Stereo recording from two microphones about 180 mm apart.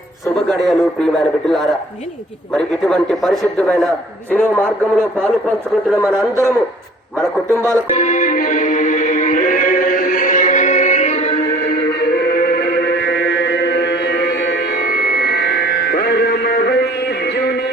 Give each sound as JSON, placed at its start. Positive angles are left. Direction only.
{"t": 0.4, "sound": "a man's voice", "side_deg": 0}
{"t": 6.1, "sound": "a man's voice", "side_deg": -15}
{"t": 7.9, "sound": "music", "side_deg": 40}
{"t": 12.3, "sound": "music", "side_deg": 60}
{"t": 13.1, "sound": "music", "side_deg": 75}